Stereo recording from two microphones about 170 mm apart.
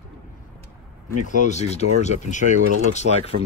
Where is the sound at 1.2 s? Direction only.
45° left (ahead or behind).